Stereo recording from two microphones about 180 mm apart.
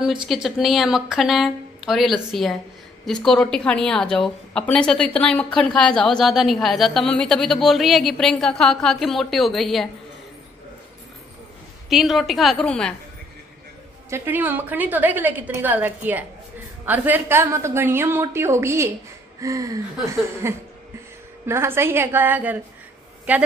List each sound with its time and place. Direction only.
0.2 s a woman's voice: centre (ahead or behind)
11.9 s a woman's voice: centre (ahead or behind)
14.1 s a woman's voice: 10° right (ahead or behind)